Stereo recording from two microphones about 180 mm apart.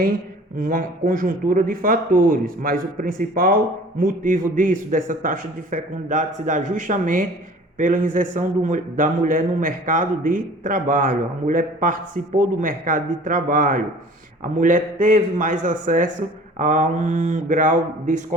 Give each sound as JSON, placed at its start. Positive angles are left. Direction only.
{"t": 0.5, "sound": "speech", "side_deg": -50}